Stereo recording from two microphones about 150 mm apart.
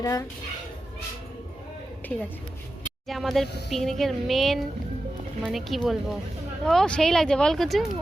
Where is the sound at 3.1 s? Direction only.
Centre (ahead or behind).